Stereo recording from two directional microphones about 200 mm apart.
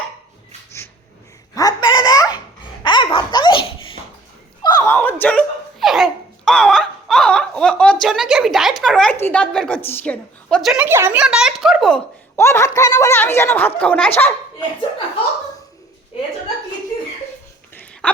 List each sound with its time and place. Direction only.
1.5 s baby laughter: 20° left (ahead or behind)
2.8 s dog: 25° left (ahead or behind)
4.6 s a sound: 15° left (ahead or behind)
5.2 s laughter: 5° left (ahead or behind)
12.4 s a child's voice: 15° left (ahead or behind)
18.0 s a sound: 5° left (ahead or behind)